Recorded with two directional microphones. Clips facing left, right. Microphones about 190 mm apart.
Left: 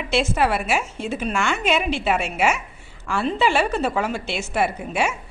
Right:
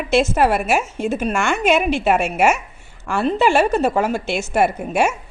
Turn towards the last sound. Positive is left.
turn(degrees=-45)  # may be behind; listen again after turning